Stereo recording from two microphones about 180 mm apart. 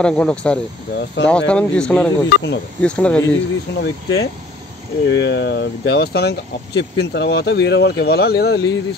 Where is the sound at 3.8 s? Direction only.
90° left.